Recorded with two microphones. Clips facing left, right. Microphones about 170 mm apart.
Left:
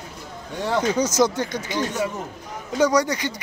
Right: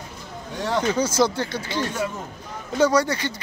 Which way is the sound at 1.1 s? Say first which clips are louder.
Left 1 dB; 15° left (ahead or behind).